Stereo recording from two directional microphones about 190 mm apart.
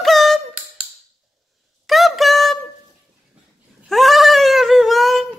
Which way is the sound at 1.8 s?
Centre (ahead or behind).